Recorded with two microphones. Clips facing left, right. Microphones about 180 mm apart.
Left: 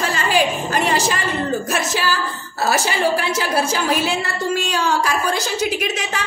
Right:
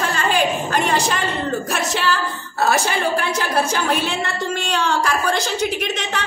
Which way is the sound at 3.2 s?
5° left (ahead or behind).